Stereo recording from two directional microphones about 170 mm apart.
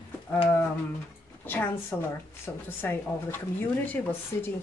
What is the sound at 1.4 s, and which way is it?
Speech, 10° left (ahead or behind).